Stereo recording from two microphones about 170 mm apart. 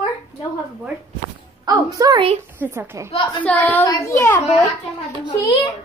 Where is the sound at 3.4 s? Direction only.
10° left (ahead or behind).